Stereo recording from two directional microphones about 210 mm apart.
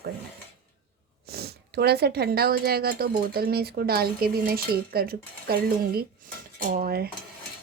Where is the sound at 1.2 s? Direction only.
50° right (ahead or behind).